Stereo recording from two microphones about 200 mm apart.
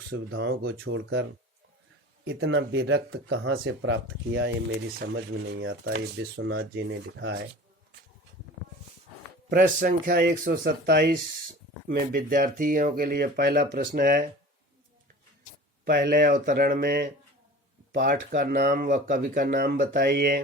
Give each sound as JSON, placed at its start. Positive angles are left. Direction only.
{"t": 0.1, "sound": "speech", "side_deg": -70}
{"t": 9.5, "sound": "speech", "side_deg": -45}
{"t": 15.8, "sound": "speech", "side_deg": -50}